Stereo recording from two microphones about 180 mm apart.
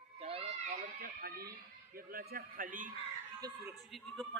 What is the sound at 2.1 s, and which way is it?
Speech, 55° right (ahead or behind).